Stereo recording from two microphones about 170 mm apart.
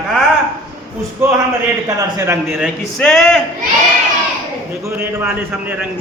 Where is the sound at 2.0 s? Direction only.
20° right (ahead or behind).